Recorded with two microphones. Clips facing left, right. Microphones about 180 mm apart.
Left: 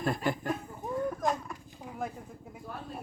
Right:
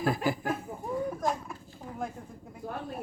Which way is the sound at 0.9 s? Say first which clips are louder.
Even; 5° right (ahead or behind).